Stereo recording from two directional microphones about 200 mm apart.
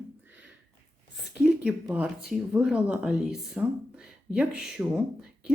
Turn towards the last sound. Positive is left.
turn(degrees=-5)  # may be behind; listen again after turning